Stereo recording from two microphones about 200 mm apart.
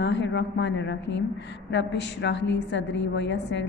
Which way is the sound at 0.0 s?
60° left (ahead or behind).